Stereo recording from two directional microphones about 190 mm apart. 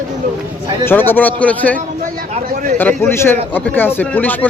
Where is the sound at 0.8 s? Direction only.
10° left (ahead or behind).